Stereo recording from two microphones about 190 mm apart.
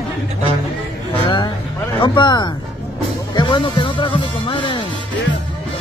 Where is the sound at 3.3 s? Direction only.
25° left (ahead or behind).